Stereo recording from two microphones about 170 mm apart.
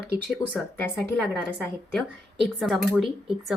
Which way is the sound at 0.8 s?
15° left (ahead or behind).